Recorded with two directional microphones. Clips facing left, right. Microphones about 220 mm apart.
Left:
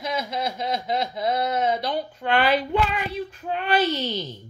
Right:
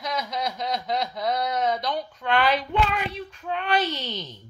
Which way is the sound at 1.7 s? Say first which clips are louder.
Left 2 dB; 30° left (ahead or behind).